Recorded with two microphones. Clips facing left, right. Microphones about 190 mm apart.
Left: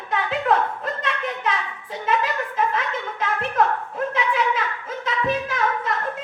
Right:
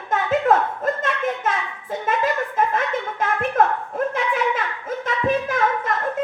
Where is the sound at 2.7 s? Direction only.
50° right (ahead or behind).